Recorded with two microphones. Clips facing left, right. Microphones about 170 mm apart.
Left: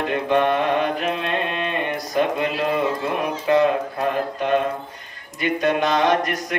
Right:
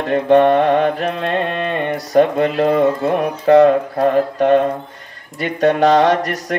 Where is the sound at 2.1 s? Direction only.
40° right (ahead or behind).